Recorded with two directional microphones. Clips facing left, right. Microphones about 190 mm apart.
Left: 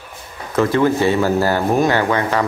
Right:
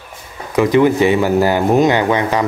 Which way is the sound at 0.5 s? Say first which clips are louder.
Right 3 dB; 15° right (ahead or behind).